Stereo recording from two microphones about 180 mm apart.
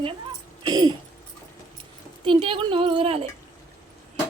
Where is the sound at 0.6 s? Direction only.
25° right (ahead or behind).